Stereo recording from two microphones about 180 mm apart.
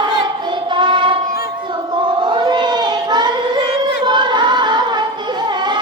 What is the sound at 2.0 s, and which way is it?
Choir, 25° right (ahead or behind).